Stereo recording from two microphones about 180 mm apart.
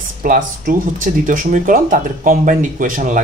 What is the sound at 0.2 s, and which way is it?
Speech, 50° right (ahead or behind).